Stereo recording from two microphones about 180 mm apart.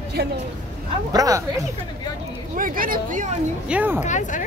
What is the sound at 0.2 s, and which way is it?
Speech, 65° right (ahead or behind).